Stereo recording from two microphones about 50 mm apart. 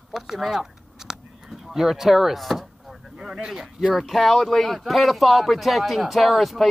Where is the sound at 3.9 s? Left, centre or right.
Centre.